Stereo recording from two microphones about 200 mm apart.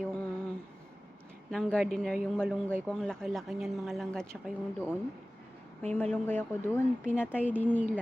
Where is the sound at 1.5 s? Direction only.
5° left (ahead or behind).